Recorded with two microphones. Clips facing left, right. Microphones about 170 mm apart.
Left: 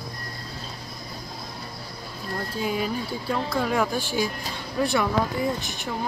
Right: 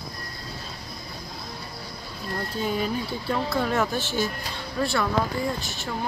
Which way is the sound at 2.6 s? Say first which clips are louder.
Even; 5° left (ahead or behind).